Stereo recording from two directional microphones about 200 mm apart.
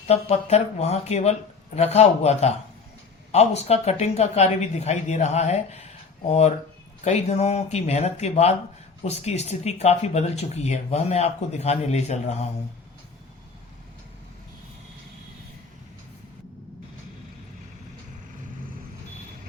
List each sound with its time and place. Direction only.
0.1 s speech: 30° left (ahead or behind)